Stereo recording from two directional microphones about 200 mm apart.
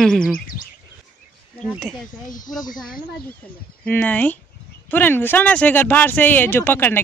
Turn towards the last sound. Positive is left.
turn(degrees=10)  # may be behind; listen again after turning